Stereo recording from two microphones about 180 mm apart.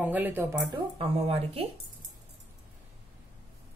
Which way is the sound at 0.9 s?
30° right (ahead or behind).